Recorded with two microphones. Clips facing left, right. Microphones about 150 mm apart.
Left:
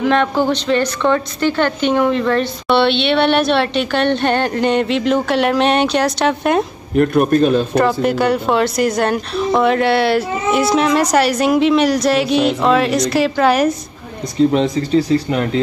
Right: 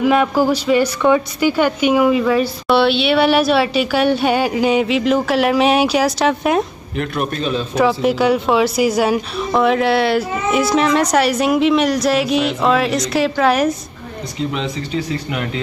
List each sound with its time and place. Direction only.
0.0 s a woman's voice: 5° right (ahead or behind)
7.0 s a man's voice: 50° left (ahead or behind)
7.7 s a woman's voice: centre (ahead or behind)
14.5 s speech: 40° left (ahead or behind)